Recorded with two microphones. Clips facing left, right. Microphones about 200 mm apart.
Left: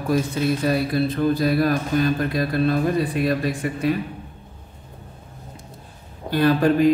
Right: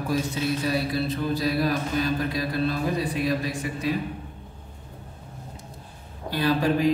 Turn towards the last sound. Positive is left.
turn(degrees=55)  # may be behind; listen again after turning